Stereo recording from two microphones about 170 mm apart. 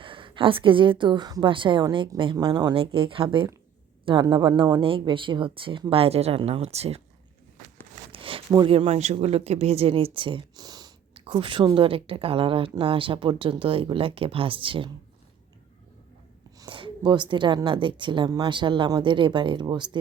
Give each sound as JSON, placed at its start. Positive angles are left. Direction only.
{"t": 0.0, "sound": "a woman's voice", "side_deg": -30}
{"t": 8.1, "sound": "a sound", "side_deg": -30}
{"t": 8.5, "sound": "speech", "side_deg": -30}
{"t": 16.6, "sound": "a woman's voice", "side_deg": -30}